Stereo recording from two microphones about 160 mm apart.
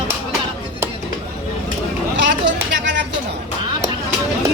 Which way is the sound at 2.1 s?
90° right.